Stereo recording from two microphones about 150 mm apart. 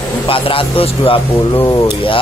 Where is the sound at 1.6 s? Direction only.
20° left (ahead or behind).